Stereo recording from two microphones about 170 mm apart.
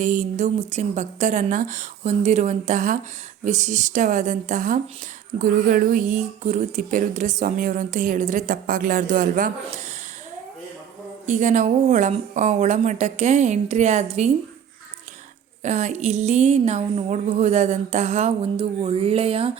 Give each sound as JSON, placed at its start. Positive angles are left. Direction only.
{"t": 0.0, "sound": "speech", "side_deg": -45}
{"t": 11.3, "sound": "speech", "side_deg": -45}
{"t": 15.6, "sound": "speech", "side_deg": -45}